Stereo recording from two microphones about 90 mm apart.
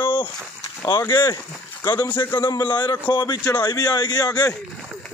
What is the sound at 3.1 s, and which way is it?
Speech, 50° left (ahead or behind).